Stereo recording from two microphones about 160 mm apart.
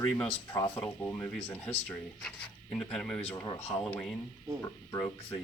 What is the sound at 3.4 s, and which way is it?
Speech, 20° left (ahead or behind).